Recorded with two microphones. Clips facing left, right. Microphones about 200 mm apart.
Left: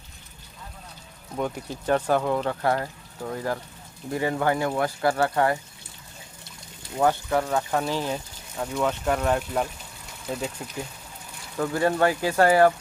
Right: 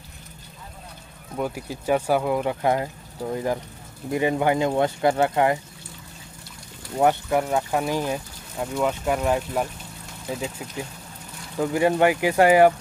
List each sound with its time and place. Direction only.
1.3 s speech: 5° right (ahead or behind)
7.0 s speech: 20° right (ahead or behind); by 10.7 s centre (ahead or behind)
11.5 s speech: 15° right (ahead or behind)